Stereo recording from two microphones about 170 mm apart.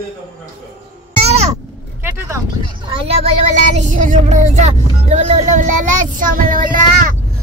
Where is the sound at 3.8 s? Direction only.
50° right (ahead or behind).